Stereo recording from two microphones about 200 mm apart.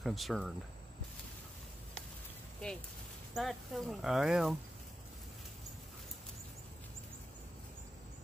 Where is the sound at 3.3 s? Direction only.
Centre (ahead or behind).